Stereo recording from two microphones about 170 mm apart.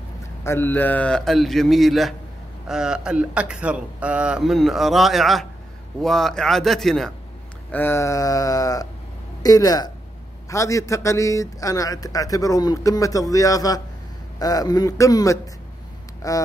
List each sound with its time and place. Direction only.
0.4 s a man's voice: 15° left (ahead or behind)
7.7 s a man's voice: 15° left (ahead or behind)